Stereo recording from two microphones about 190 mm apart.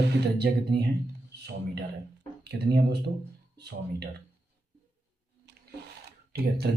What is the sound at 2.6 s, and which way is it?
Speech, 60° right (ahead or behind).